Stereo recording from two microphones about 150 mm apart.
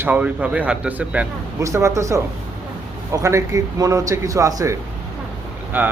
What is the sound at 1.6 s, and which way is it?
Speech, 20° right (ahead or behind).